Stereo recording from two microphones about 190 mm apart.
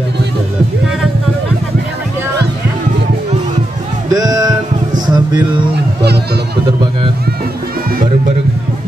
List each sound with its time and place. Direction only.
4.1 s music: 20° right (ahead or behind)